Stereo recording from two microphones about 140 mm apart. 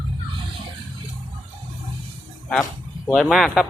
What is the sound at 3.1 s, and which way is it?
Speech, centre (ahead or behind).